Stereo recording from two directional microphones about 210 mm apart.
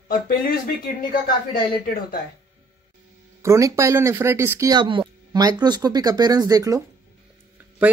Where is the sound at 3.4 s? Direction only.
15° right (ahead or behind).